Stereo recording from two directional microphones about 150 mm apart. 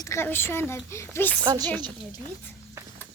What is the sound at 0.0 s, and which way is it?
Speech, 20° left (ahead or behind).